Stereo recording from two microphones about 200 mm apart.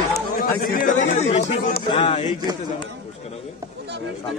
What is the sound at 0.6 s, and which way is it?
Chatter, 40° left (ahead or behind).